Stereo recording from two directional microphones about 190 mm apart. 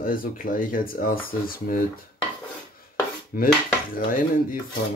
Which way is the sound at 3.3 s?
50° left (ahead or behind).